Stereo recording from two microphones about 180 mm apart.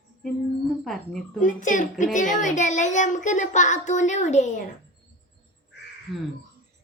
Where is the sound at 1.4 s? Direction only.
45° left (ahead or behind).